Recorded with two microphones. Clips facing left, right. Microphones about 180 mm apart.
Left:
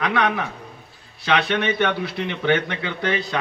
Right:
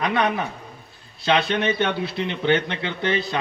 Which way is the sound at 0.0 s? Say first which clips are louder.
Even; 20° right (ahead or behind).